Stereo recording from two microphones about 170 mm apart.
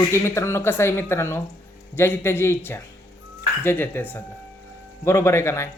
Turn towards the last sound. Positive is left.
turn(degrees=15)  # may be behind; listen again after turning